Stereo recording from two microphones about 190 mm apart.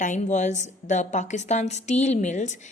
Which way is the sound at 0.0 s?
40° left (ahead or behind).